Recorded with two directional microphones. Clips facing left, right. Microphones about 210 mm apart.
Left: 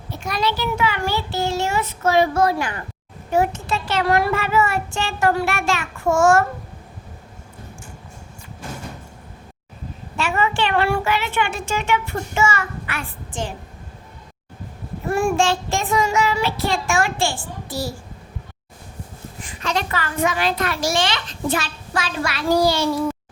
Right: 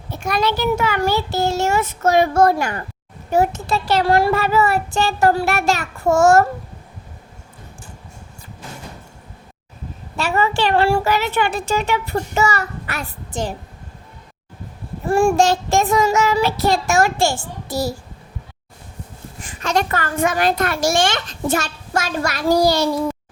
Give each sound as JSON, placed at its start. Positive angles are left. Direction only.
{"t": 0.3, "sound": "a child's voice", "side_deg": -50}
{"t": 10.2, "sound": "speech", "side_deg": -35}
{"t": 15.0, "sound": "speech", "side_deg": -30}
{"t": 19.5, "sound": "a child's voice", "side_deg": -45}